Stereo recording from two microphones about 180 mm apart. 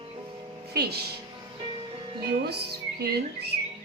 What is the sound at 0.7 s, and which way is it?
Speech, 60° right (ahead or behind).